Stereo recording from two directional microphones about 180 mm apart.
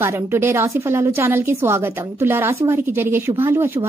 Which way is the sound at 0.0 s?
15° right (ahead or behind).